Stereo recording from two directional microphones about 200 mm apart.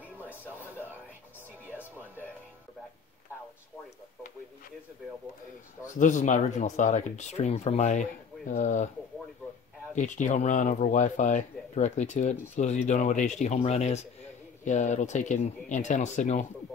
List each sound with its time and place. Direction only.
5.9 s speech: 40° left (ahead or behind)
9.9 s speech: 35° left (ahead or behind)